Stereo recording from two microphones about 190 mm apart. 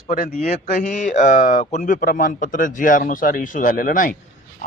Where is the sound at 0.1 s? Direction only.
45° left (ahead or behind).